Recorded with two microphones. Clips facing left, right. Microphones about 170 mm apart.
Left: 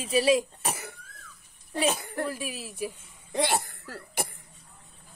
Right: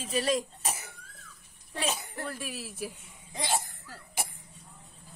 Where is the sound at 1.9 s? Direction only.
55° left (ahead or behind).